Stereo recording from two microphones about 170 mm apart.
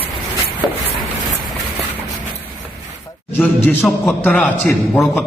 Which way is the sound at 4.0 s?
10° left (ahead or behind).